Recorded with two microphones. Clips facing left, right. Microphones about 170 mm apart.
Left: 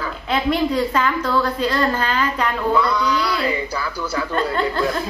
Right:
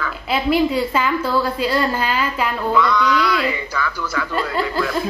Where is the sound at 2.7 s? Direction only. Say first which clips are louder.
Right 3 dB; 35° left (ahead or behind).